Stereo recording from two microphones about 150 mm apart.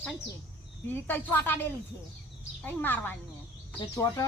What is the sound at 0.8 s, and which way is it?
Speech, 15° left (ahead or behind).